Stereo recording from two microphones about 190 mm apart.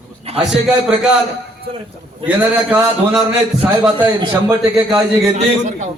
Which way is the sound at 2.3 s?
10° right (ahead or behind).